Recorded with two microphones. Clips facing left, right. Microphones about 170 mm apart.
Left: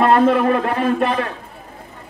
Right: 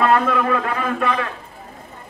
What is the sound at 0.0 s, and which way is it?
A man's voice, 30° left (ahead or behind).